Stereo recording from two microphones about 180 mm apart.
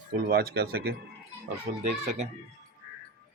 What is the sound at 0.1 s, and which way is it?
Speech, 55° right (ahead or behind).